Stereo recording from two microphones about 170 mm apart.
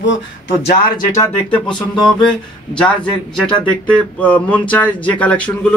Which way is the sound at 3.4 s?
5° left (ahead or behind).